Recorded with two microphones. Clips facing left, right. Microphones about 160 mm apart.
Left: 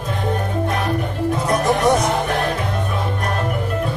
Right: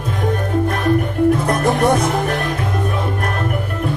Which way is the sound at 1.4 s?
55° right (ahead or behind).